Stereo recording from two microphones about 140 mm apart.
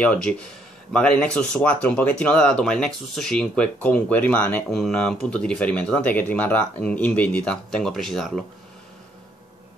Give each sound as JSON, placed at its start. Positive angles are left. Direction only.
{"t": 0.0, "sound": "speech", "side_deg": 10}
{"t": 4.6, "sound": "speech", "side_deg": 0}